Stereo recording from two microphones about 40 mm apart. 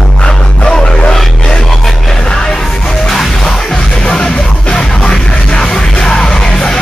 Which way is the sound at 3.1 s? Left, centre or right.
Centre.